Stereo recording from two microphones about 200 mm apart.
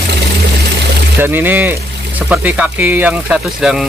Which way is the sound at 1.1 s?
10° right (ahead or behind).